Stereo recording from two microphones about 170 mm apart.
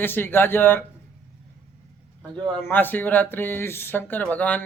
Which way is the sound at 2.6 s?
10° left (ahead or behind).